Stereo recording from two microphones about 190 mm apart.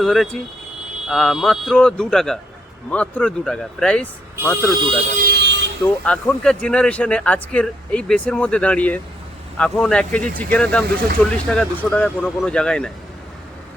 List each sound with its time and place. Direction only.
0.0 s speech: centre (ahead or behind)
5.3 s vehicle: 65° right (ahead or behind)
6.1 s speech: 5° left (ahead or behind)